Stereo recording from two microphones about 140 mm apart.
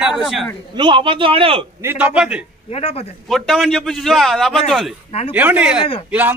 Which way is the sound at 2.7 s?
45° left (ahead or behind).